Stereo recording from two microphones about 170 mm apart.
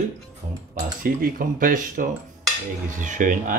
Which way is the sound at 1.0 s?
55° right (ahead or behind).